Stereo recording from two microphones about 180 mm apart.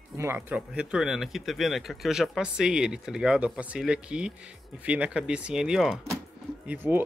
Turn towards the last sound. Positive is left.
turn(degrees=-10)  # may be behind; listen again after turning